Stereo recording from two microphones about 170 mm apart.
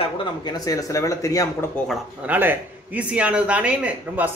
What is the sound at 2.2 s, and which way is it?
Speech, 10° right (ahead or behind).